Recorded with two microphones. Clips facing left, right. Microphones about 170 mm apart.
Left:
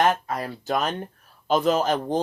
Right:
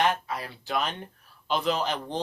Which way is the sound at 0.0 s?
45° left (ahead or behind).